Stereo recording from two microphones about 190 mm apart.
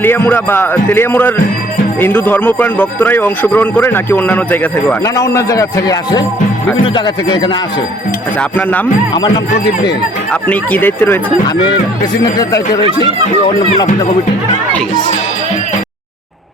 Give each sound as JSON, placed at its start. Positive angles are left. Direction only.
{"t": 0.0, "sound": "speech", "side_deg": 10}
{"t": 8.4, "sound": "speech", "side_deg": 10}
{"t": 9.1, "sound": "speech", "side_deg": 20}
{"t": 10.5, "sound": "speech", "side_deg": 10}
{"t": 12.2, "sound": "speech", "side_deg": 20}